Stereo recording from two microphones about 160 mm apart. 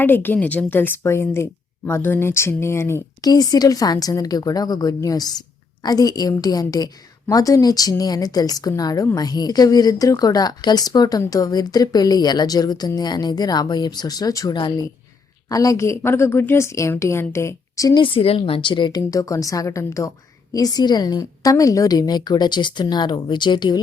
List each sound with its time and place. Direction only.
0.0 s a woman's voice: 10° left (ahead or behind); by 23.8 s 30° left (ahead or behind)